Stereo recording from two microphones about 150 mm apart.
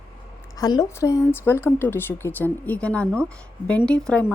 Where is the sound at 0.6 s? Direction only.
25° left (ahead or behind).